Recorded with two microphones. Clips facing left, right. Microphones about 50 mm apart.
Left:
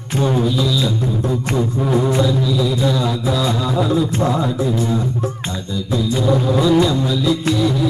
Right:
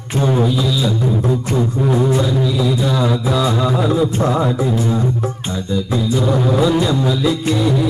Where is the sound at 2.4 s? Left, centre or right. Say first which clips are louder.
Even; centre.